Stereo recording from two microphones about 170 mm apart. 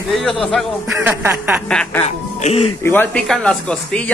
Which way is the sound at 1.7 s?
5° left (ahead or behind).